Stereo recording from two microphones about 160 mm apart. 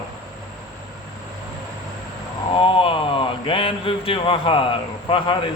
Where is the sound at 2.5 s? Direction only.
35° left (ahead or behind).